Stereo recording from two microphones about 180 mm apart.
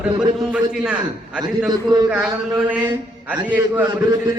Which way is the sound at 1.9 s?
25° right (ahead or behind).